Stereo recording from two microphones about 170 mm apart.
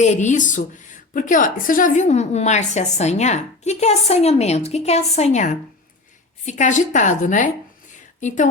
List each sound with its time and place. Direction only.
0.0 s a woman's voice: 45° left (ahead or behind)